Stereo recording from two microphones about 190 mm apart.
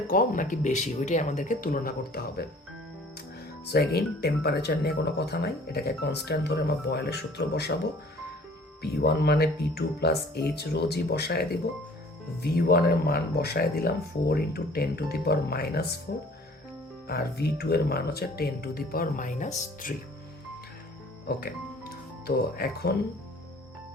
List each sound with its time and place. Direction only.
0.1 s speech: 45° left (ahead or behind)
3.7 s speech: 55° left (ahead or behind)
8.8 s speech: 60° left (ahead or behind); by 19.9 s 40° left (ahead or behind)
21.2 s music: 55° left (ahead or behind)
22.4 s speech: 55° left (ahead or behind)